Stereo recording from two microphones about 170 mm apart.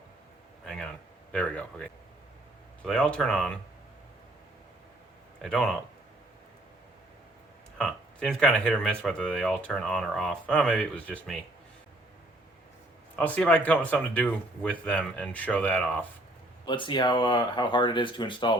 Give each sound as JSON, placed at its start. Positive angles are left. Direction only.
{"t": 1.3, "sound": "speech", "side_deg": 5}
{"t": 5.4, "sound": "speech", "side_deg": 5}
{"t": 7.8, "sound": "speech", "side_deg": 5}
{"t": 13.1, "sound": "speech", "side_deg": 10}
{"t": 16.6, "sound": "speech", "side_deg": 30}